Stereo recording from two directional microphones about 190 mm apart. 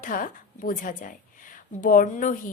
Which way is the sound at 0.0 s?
45° left (ahead or behind).